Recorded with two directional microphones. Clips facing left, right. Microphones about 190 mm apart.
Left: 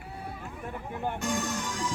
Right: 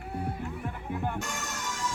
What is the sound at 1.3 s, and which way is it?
Music, 35° left (ahead or behind).